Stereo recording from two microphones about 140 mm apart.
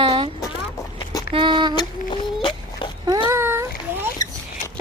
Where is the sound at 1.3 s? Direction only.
35° right (ahead or behind).